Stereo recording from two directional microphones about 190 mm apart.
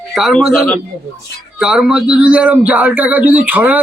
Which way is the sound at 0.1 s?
Centre (ahead or behind).